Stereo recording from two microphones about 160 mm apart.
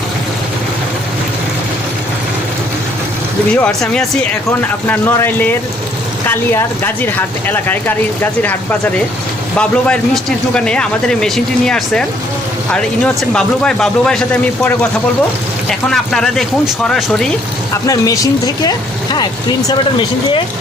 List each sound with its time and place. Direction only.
3.5 s speech: 5° left (ahead or behind)
9.6 s speech: 5° left (ahead or behind)
15.9 s speech: 5° left (ahead or behind)
17.8 s speech: 20° left (ahead or behind)